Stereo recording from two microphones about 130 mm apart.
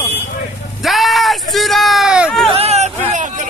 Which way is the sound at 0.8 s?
Centre (ahead or behind).